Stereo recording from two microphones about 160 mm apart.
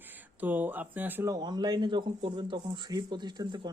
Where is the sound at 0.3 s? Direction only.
10° right (ahead or behind).